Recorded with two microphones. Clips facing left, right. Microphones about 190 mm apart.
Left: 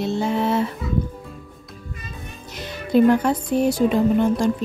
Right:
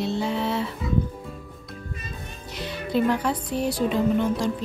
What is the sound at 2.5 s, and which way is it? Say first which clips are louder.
Music: left 6 dB; 45° left (ahead or behind).